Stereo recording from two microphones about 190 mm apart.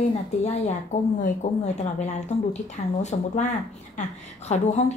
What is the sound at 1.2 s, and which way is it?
Speech, 35° left (ahead or behind).